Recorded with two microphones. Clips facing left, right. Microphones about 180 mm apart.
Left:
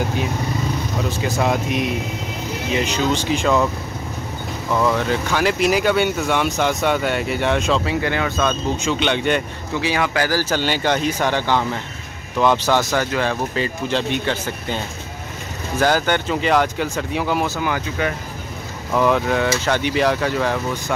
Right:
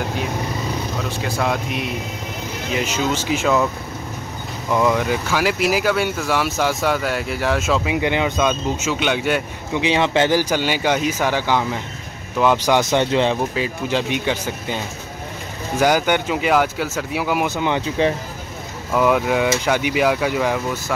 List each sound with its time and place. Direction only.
1.4 s speech: 5° left (ahead or behind)
2.8 s speech: 5° right (ahead or behind)
4.6 s speech: 10° right (ahead or behind)
9.8 s speech: 20° right (ahead or behind)
10.4 s speech: 10° right (ahead or behind)
12.9 s speech: 25° right (ahead or behind)
13.6 s speech: 10° right (ahead or behind)
15.8 s speech: 10° right (ahead or behind)
17.6 s speech: 25° right (ahead or behind)
18.9 s speech: 10° right (ahead or behind)